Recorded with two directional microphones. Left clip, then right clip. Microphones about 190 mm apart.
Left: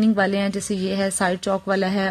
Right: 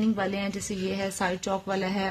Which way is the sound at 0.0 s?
25° left (ahead or behind).